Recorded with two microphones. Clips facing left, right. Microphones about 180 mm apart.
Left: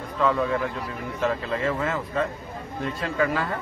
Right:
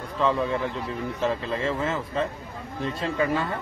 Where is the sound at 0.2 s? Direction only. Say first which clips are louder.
Left 1 dB; 25° right (ahead or behind).